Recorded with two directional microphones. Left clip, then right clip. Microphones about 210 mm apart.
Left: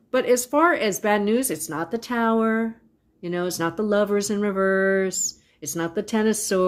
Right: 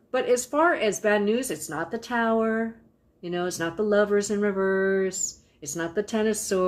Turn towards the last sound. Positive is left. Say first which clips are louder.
# left 3 dB
turn(degrees=45)  # may be behind; listen again after turning